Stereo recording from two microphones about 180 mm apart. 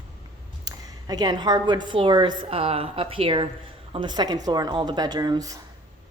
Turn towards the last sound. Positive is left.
turn(degrees=-20)  # may be behind; listen again after turning